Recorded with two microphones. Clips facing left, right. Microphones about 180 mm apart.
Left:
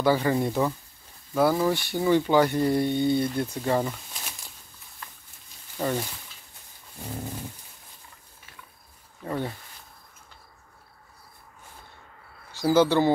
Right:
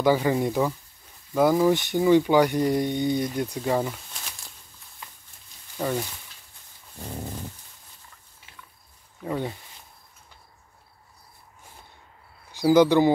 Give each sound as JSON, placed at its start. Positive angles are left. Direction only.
{"t": 0.0, "sound": "speech", "side_deg": -15}
{"t": 5.8, "sound": "speech", "side_deg": 0}
{"t": 9.2, "sound": "speech", "side_deg": -15}
{"t": 12.5, "sound": "speech", "side_deg": -15}